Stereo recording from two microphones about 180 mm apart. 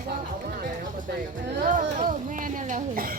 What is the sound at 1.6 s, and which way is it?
A woman's voice, 45° right (ahead or behind).